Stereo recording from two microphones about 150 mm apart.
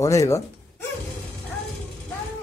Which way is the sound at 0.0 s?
20° left (ahead or behind).